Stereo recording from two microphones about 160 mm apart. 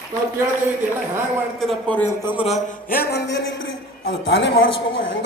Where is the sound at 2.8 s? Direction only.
70° left (ahead or behind); by 3.4 s 90° left.